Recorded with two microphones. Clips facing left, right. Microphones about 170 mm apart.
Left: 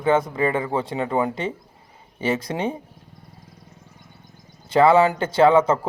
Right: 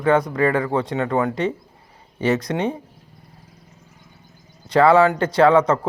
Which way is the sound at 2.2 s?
30° left (ahead or behind).